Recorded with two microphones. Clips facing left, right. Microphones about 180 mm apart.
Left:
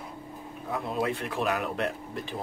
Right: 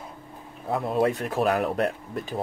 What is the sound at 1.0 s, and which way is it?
Speech, 40° right (ahead or behind).